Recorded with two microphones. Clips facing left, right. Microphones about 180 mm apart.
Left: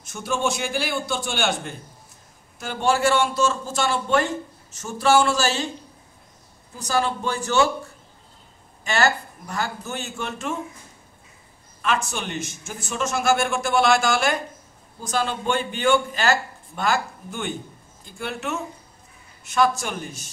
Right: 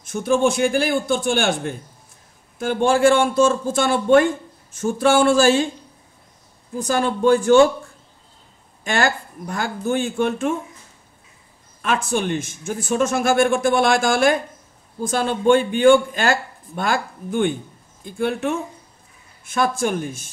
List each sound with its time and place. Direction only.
0.0 s speech: 55° right (ahead or behind)
6.8 s speech: 50° right (ahead or behind)
8.8 s speech: 50° right (ahead or behind)
11.8 s speech: 50° right (ahead or behind)